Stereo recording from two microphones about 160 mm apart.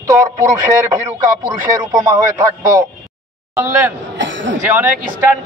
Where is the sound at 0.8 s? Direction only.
20° right (ahead or behind).